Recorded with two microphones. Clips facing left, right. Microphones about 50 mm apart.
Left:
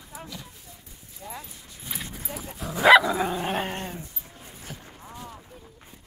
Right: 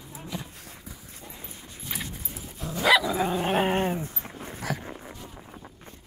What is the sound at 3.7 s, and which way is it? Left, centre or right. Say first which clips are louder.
Dog: right 8 dB; right.